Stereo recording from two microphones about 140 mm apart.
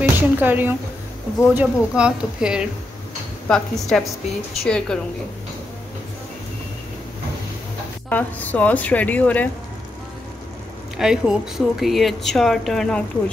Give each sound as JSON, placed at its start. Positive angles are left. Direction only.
{"t": 0.0, "sound": "a woman's voice", "side_deg": -15}
{"t": 8.1, "sound": "a woman's voice", "side_deg": 10}
{"t": 11.0, "sound": "a woman's voice", "side_deg": -5}